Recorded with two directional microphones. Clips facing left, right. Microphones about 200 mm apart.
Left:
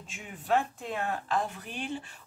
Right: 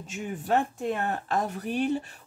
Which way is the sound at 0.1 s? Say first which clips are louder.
Right 2 dB; 45° right (ahead or behind).